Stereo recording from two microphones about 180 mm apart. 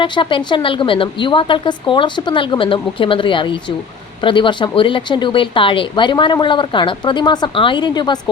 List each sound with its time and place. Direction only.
0.0 s speech: 30° left (ahead or behind)